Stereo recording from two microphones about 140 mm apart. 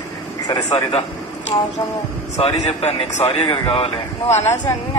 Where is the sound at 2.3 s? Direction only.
50° left (ahead or behind).